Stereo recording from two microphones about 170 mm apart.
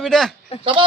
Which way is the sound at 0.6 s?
30° right (ahead or behind).